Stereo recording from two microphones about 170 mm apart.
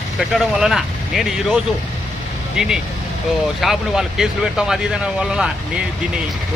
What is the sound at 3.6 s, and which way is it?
Speech, centre (ahead or behind).